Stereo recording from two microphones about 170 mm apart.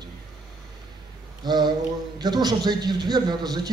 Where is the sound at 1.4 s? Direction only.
25° right (ahead or behind).